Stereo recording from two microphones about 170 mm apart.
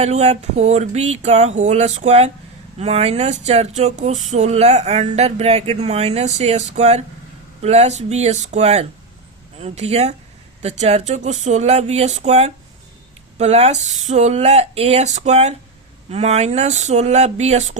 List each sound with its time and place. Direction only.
0.0 s speech: 40° right (ahead or behind)